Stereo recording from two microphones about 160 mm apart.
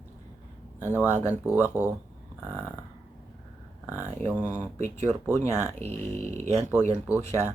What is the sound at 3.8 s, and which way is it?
Speech, 15° right (ahead or behind).